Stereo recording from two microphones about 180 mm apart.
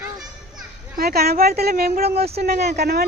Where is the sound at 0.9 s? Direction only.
60° right (ahead or behind).